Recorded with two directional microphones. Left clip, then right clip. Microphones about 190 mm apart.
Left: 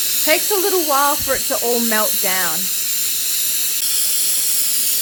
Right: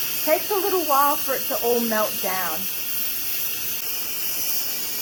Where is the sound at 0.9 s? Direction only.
60° left (ahead or behind).